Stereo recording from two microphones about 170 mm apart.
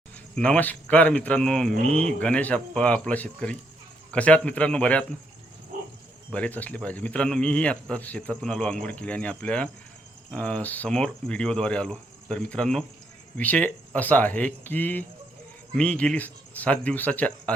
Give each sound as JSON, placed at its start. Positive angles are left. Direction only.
{"t": 0.3, "sound": "a man's voice", "side_deg": 10}
{"t": 6.3, "sound": "a man's voice", "side_deg": 10}